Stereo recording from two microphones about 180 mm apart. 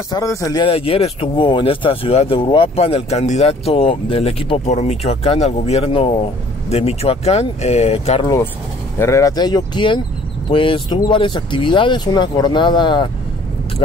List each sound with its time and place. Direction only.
0.1 s speech: 15° left (ahead or behind); by 8.3 s 35° left (ahead or behind)
8.9 s speech: 15° left (ahead or behind)